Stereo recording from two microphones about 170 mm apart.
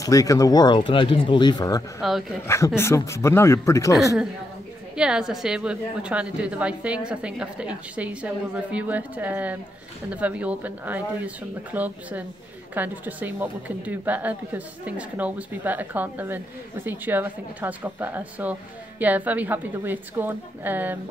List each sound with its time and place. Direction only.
0.0 s speech: 20° left (ahead or behind)
2.0 s speech: centre (ahead or behind)
2.4 s a man's voice: 15° left (ahead or behind)
4.9 s a woman's voice: 5° right (ahead or behind)